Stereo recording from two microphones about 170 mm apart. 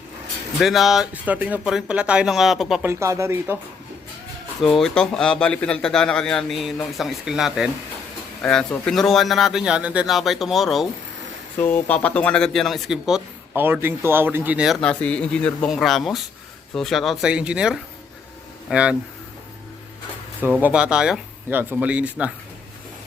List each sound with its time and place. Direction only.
0.6 s a man's voice: centre (ahead or behind)
2.8 s speech: 15° right (ahead or behind)
4.6 s a man's voice: 5° left (ahead or behind)
11.6 s a man's voice: 10° left (ahead or behind); by 18.9 s 5° right (ahead or behind)
20.6 s speech: 10° right (ahead or behind)